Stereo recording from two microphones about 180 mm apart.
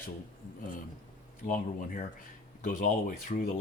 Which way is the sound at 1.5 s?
50° left (ahead or behind).